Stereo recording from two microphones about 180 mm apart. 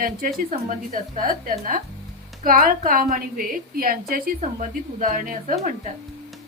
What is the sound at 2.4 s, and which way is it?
A woman's voice, 50° right (ahead or behind).